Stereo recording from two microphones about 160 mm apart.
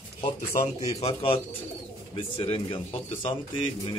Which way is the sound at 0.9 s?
35° left (ahead or behind).